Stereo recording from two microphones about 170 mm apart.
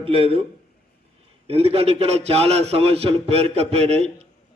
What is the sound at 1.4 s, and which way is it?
A man's voice, 35° right (ahead or behind).